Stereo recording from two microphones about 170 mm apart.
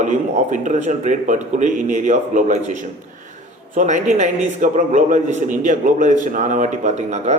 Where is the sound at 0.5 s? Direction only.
45° right (ahead or behind).